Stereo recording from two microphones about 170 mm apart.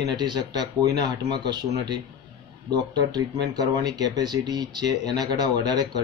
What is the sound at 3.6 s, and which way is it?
A man's voice, 25° right (ahead or behind).